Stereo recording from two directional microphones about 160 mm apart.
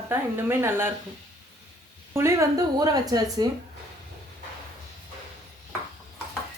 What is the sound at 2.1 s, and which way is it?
Speech, 20° right (ahead or behind).